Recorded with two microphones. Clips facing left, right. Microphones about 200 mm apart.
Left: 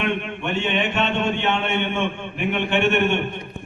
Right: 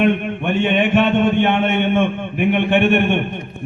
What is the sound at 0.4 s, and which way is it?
A man's voice, 55° right (ahead or behind).